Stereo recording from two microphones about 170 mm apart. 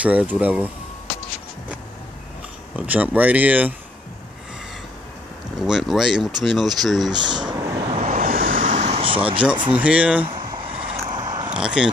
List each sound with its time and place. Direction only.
0.0 s speech: 10° right (ahead or behind)
2.7 s speech: 10° right (ahead or behind)
5.6 s speech: centre (ahead or behind)
7.1 s a sound: 25° right (ahead or behind)
7.9 s vehicle: 45° right (ahead or behind)
9.7 s speech: 5° right (ahead or behind)
10.2 s vehicle: 30° right (ahead or behind)
11.5 s speech: 5° right (ahead or behind)